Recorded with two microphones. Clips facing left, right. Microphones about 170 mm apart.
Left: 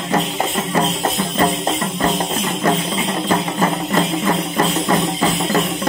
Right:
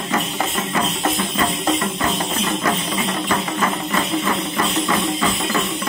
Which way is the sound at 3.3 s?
35° left (ahead or behind).